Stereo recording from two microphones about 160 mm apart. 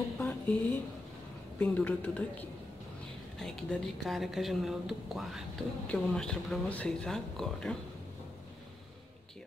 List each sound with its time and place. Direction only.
0.2 s a sound: 10° left (ahead or behind)
1.6 s a woman's voice: 10° left (ahead or behind)
3.3 s speech: centre (ahead or behind)